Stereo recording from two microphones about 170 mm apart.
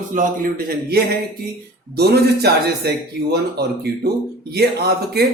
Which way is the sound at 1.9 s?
70° right (ahead or behind).